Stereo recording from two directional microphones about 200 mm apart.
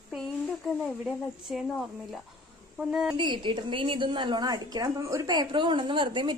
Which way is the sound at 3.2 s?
25° right (ahead or behind).